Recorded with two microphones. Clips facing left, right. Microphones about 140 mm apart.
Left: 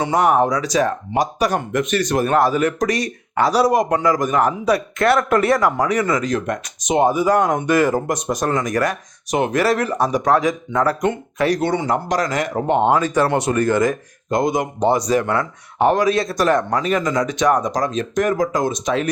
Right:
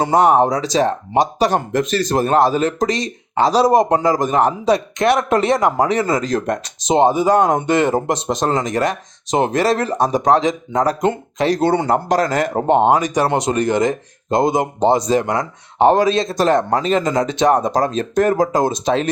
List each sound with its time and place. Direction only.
0.1 s speech: 25° right (ahead or behind)
11.7 s speech: 55° right (ahead or behind)
12.0 s speech: 30° right (ahead or behind)
12.9 s speech: 15° right (ahead or behind)